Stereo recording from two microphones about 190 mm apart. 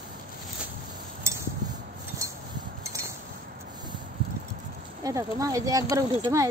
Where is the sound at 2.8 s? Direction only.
15° right (ahead or behind).